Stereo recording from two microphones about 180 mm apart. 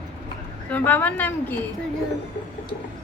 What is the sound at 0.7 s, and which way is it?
Speech, 10° left (ahead or behind).